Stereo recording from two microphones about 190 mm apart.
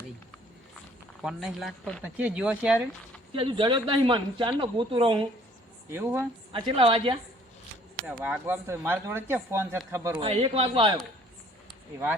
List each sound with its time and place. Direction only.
1.2 s speech: centre (ahead or behind)
3.3 s speech: 25° right (ahead or behind)
5.9 s speech: 10° right (ahead or behind)
6.5 s speech: 30° right (ahead or behind)
8.0 s speech: 5° right (ahead or behind)
10.2 s speech: 30° right (ahead or behind)